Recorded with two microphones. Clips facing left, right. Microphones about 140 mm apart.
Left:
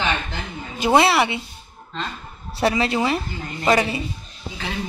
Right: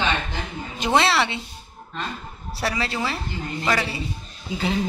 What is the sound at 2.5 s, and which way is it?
Speech, 20° left (ahead or behind).